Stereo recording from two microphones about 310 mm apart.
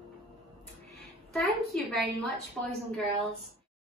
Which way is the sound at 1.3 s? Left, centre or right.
Centre.